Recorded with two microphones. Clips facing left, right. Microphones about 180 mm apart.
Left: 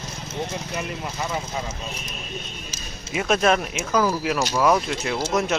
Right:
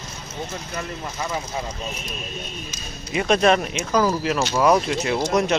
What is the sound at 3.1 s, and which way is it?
Speech, 5° left (ahead or behind).